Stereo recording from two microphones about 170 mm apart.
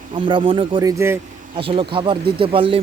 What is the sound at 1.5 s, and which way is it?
Speech, 30° right (ahead or behind).